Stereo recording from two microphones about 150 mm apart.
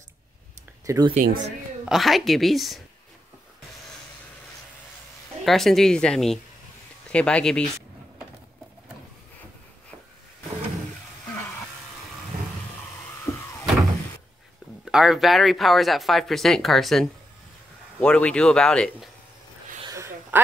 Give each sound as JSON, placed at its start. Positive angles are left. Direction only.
{"t": 0.8, "sound": "speech", "side_deg": -25}
{"t": 1.1, "sound": "speech", "side_deg": -70}
{"t": 1.9, "sound": "speech", "side_deg": 0}
{"t": 5.4, "sound": "speech", "side_deg": 0}
{"t": 13.3, "sound": "a sound", "side_deg": 20}
{"t": 14.9, "sound": "speech", "side_deg": -5}
{"t": 19.8, "sound": "a sound", "side_deg": -20}